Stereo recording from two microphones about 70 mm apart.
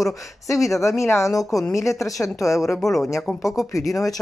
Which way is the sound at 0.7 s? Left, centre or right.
Left.